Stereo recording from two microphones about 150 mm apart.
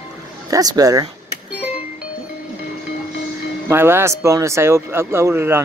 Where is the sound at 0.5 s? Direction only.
25° right (ahead or behind).